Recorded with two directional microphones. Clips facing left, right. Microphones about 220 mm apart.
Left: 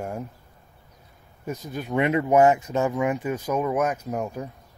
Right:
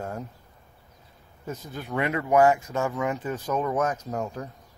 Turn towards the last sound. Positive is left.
turn(degrees=10)  # may be behind; listen again after turning